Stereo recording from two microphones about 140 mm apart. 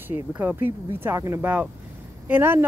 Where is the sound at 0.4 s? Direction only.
15° right (ahead or behind).